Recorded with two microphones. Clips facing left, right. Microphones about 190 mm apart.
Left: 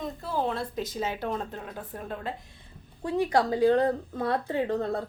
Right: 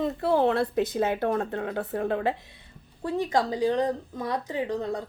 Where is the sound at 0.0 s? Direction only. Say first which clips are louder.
Right 7 dB; 70° right (ahead or behind); by 2.3 s 85° right.